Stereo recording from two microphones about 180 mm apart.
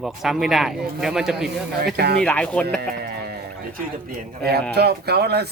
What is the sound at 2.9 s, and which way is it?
Music, 65° right (ahead or behind).